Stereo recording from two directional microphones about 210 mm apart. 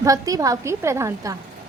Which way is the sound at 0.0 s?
15° right (ahead or behind).